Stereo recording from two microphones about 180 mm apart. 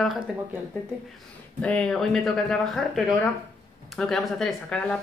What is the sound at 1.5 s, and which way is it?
A woman's voice, 5° left (ahead or behind).